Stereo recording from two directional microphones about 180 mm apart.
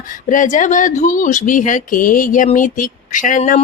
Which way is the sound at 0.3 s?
45° left (ahead or behind).